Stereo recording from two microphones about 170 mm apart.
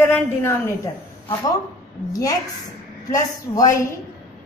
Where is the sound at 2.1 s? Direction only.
20° left (ahead or behind).